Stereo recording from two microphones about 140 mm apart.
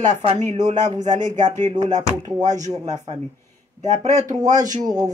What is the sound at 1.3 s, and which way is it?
A woman's voice, 65° right (ahead or behind).